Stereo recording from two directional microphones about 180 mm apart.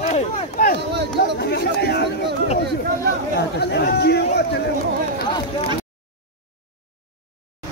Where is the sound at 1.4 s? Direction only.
65° left (ahead or behind).